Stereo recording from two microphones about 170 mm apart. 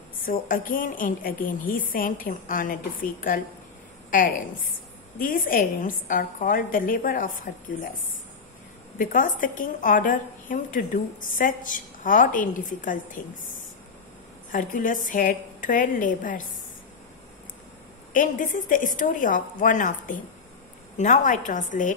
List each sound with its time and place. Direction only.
0.3 s a woman's voice: 55° left (ahead or behind)
5.2 s a woman's voice: 55° left (ahead or behind)
8.9 s a woman's voice: 55° left (ahead or behind)
14.5 s a woman's voice: 50° left (ahead or behind)
18.1 s a woman's voice: 50° left (ahead or behind)